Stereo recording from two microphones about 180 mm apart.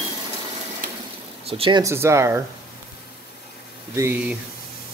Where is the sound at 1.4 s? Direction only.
30° right (ahead or behind).